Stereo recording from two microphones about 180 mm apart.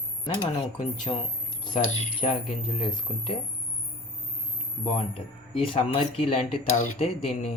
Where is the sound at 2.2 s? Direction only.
30° left (ahead or behind).